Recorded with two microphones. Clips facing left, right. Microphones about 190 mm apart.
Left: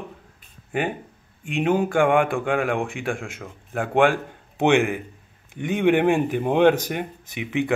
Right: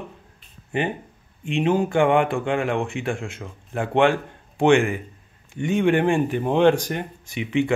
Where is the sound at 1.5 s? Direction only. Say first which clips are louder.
Even; 15° left (ahead or behind).